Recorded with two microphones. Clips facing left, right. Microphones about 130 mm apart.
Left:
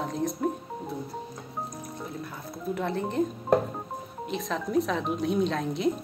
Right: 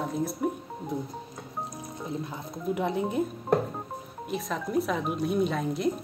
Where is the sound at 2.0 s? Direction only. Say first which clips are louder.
Right 3 dB; 20° right (ahead or behind).